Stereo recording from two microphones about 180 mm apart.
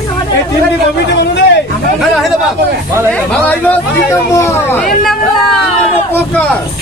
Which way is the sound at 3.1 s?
5° left (ahead or behind).